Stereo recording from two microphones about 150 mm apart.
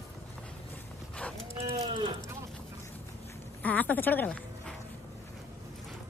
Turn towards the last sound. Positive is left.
turn(degrees=10)  # may be behind; listen again after turning